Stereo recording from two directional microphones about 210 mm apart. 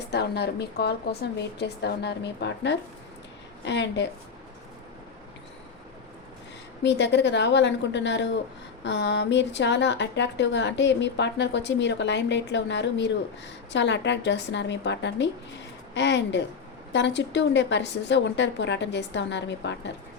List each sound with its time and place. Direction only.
0.1 s a woman's voice: 50° left (ahead or behind)
6.8 s speech: 55° left (ahead or behind)